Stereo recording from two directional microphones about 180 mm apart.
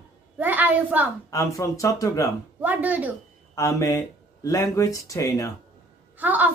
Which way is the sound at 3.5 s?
15° left (ahead or behind).